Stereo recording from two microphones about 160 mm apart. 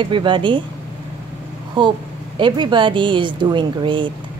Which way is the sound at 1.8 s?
30° right (ahead or behind).